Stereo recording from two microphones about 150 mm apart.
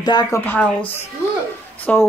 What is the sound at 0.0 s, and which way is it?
Speech, 30° left (ahead or behind).